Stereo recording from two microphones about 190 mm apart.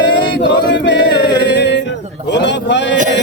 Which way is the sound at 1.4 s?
65° left (ahead or behind).